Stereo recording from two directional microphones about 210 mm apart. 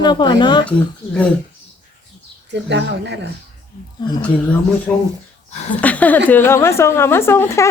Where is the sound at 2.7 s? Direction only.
55° right (ahead or behind).